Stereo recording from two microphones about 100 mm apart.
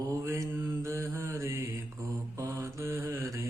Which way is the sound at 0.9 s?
30° right (ahead or behind).